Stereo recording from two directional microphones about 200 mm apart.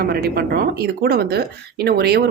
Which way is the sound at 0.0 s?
50° right (ahead or behind).